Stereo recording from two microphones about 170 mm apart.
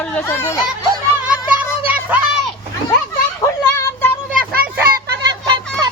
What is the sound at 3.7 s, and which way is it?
Child singing, 10° left (ahead or behind).